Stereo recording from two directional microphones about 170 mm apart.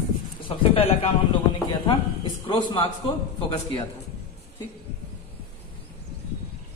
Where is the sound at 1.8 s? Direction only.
30° left (ahead or behind).